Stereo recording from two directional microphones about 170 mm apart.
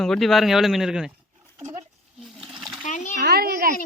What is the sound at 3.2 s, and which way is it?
Speech, 70° right (ahead or behind).